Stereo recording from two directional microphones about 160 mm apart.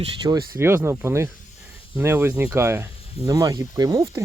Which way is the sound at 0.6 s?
15° right (ahead or behind).